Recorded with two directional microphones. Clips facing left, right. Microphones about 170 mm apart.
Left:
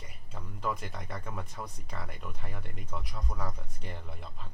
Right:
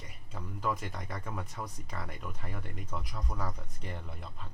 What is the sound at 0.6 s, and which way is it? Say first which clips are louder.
Speech: even; centre (ahead or behind).